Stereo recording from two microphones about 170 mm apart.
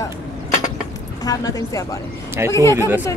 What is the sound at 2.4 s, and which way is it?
Speech, 15° right (ahead or behind).